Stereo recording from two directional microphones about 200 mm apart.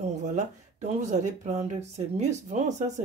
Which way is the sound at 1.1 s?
35° right (ahead or behind).